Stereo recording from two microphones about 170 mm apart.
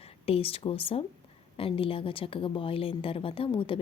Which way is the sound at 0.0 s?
35° left (ahead or behind).